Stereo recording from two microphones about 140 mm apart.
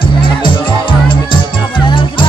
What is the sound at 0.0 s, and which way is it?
Music, 35° left (ahead or behind).